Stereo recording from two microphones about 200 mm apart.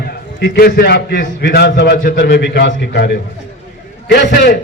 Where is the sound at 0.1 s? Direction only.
55° left (ahead or behind).